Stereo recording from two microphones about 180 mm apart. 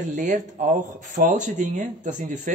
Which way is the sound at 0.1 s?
45° right (ahead or behind).